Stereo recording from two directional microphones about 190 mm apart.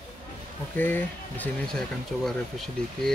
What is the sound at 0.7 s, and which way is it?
Speech, 10° left (ahead or behind).